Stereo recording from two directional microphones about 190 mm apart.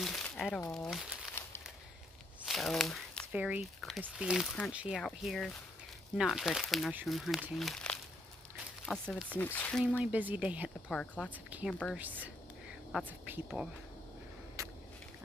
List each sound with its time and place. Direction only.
0.0 s crumpling: centre (ahead or behind)
0.7 s speech: centre (ahead or behind)
2.4 s speech: centre (ahead or behind)
9.9 s a woman's voice: 10° right (ahead or behind)
11.0 s speech: 5° left (ahead or behind)
11.3 s a woman's voice: 10° right (ahead or behind)
14.6 s vehicle: 15° right (ahead or behind)